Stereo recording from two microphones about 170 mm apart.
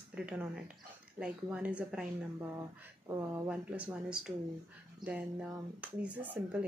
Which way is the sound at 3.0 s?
20° right (ahead or behind).